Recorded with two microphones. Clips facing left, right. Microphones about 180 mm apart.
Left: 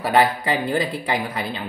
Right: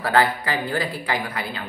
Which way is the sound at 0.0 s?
20° left (ahead or behind).